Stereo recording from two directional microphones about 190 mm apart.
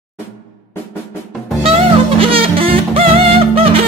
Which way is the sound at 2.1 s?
30° right (ahead or behind).